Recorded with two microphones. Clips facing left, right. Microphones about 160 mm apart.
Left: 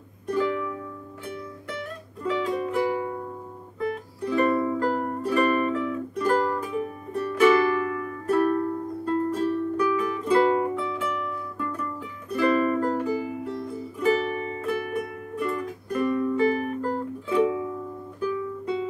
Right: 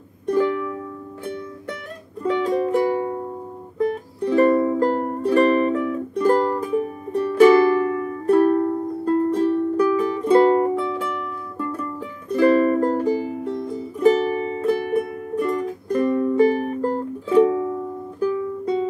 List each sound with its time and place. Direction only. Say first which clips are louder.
0.4 s music: right 5 dB; 35° right (ahead or behind)
2.4 s music: right 6 dB; 40° right (ahead or behind)